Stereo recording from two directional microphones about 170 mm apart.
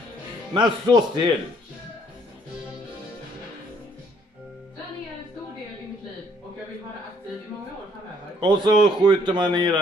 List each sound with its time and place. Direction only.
0.6 s a man's voice: 25° right (ahead or behind)
8.4 s a man's voice: 25° right (ahead or behind)